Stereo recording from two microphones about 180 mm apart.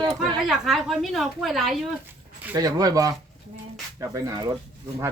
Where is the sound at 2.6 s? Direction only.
20° right (ahead or behind).